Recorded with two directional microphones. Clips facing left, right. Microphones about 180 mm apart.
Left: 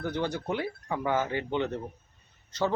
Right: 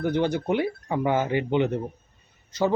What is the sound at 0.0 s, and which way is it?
Speech, 20° right (ahead or behind).